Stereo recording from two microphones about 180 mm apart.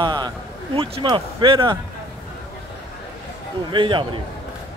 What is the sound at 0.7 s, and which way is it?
Speech, 30° right (ahead or behind).